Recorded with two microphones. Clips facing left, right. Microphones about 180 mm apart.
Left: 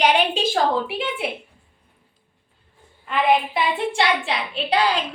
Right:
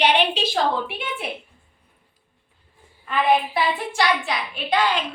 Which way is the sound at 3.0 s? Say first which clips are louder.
Left 1 dB; 20° left (ahead or behind).